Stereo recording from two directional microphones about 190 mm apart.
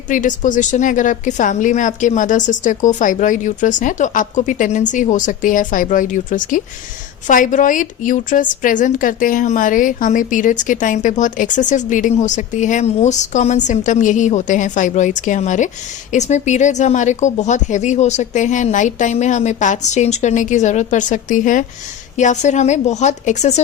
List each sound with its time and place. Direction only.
0.1 s a woman's voice: 40° left (ahead or behind)